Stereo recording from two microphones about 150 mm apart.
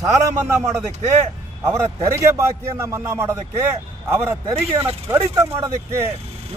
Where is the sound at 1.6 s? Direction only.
20° right (ahead or behind).